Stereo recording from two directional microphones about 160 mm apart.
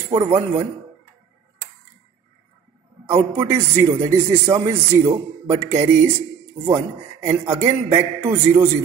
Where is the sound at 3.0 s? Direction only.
15° right (ahead or behind).